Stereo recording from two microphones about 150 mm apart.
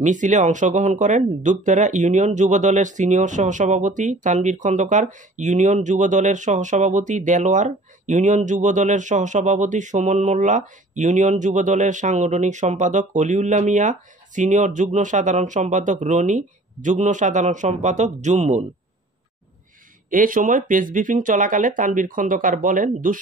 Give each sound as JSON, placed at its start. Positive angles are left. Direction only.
{"t": 0.0, "sound": "speech", "side_deg": -55}
{"t": 20.1, "sound": "speech", "side_deg": -65}